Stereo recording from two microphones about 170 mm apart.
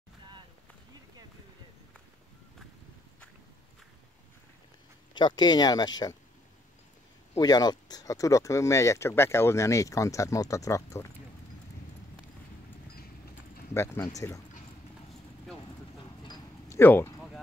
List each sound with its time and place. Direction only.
5.1 s speech: 25° left (ahead or behind)
7.3 s speech: 25° left (ahead or behind)
14.0 s speech: 20° left (ahead or behind)
16.3 s a sound: 15° left (ahead or behind)